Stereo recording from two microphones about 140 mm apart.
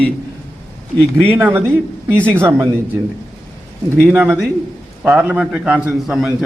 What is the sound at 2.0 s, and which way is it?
Speech, 10° left (ahead or behind).